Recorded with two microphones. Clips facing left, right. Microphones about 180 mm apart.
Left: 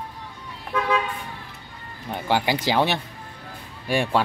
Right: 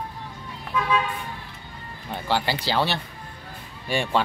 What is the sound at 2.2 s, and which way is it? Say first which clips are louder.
Speech: left 3 dB; 15° left (ahead or behind).